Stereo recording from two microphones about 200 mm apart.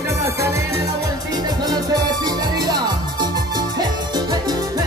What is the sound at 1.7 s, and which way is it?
Music, 20° right (ahead or behind).